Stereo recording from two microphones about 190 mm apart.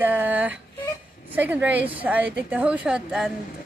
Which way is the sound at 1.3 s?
10° right (ahead or behind).